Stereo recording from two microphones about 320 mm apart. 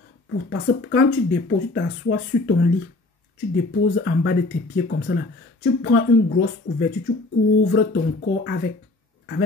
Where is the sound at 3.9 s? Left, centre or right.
Left.